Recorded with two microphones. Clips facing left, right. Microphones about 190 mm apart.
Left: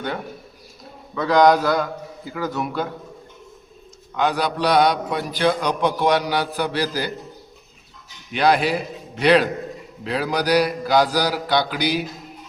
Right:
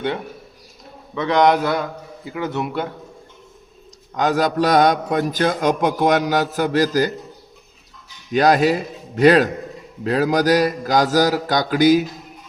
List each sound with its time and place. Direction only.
1.3 s a man's voice: 25° right (ahead or behind)
4.1 s a man's voice: 40° right (ahead or behind)
8.3 s a man's voice: 45° right (ahead or behind)